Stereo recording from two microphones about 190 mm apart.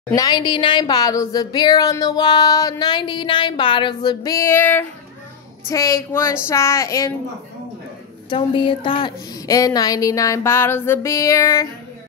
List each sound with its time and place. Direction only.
0.1 s a woman's voice: 20° left (ahead or behind)
8.3 s a woman's voice: 25° left (ahead or behind)